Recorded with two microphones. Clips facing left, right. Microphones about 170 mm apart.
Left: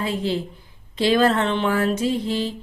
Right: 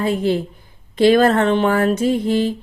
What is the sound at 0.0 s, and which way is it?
Speech, 50° right (ahead or behind).